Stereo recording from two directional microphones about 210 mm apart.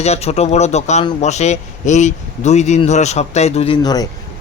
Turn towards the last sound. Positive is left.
turn(degrees=20)  # may be behind; listen again after turning